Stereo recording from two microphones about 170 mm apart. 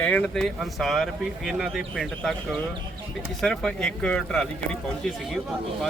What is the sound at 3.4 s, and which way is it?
Speech, 5° left (ahead or behind).